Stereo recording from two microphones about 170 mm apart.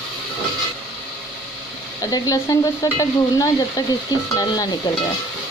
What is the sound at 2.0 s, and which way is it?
Stir, 20° left (ahead or behind).